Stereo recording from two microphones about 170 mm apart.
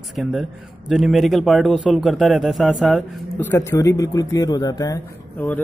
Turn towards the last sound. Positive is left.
turn(degrees=10)  # may be behind; listen again after turning